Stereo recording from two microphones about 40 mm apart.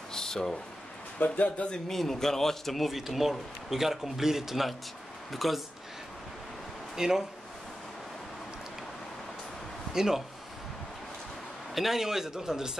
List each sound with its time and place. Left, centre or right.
0.1 s a sound: centre
1.2 s speech: left
1.9 s a man's voice: centre
7.0 s speech: centre
9.9 s speech: centre
11.7 s speech: centre